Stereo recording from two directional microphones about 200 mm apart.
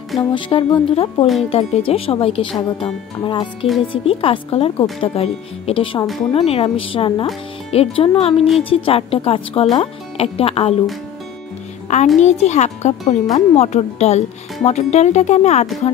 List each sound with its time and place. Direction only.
0.3 s a woman's voice: 25° left (ahead or behind)
1.2 s speech: centre (ahead or behind)
1.5 s a woman's voice: 30° left (ahead or behind)
3.6 s speech: centre (ahead or behind)
3.9 s a woman's voice: 25° left (ahead or behind)
12.2 s speech: 35° left (ahead or behind)